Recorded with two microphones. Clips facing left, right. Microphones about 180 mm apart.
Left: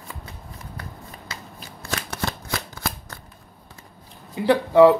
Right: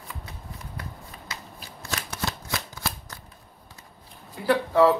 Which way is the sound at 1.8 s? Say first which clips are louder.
Left 3 dB; 55° left (ahead or behind).